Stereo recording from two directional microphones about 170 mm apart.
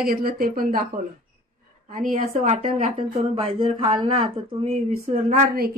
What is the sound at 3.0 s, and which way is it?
Speech, 30° right (ahead or behind).